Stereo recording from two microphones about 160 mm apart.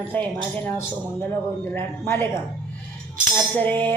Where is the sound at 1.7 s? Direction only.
15° left (ahead or behind).